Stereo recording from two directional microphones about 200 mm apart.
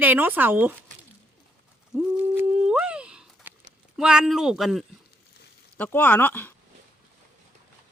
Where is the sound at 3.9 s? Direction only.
5° right (ahead or behind).